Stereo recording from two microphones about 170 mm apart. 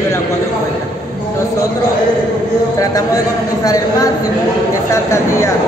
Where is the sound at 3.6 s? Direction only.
20° left (ahead or behind).